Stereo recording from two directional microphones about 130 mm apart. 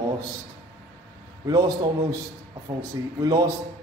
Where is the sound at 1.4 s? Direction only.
30° right (ahead or behind).